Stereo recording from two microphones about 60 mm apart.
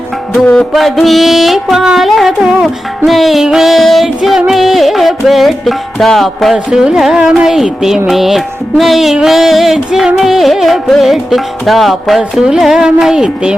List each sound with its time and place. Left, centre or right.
0.3 s music: centre
0.7 s music: centre
2.4 s music: centre
6.7 s music: centre